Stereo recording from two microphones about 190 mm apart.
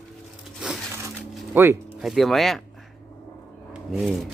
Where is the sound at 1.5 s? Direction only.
10° right (ahead or behind).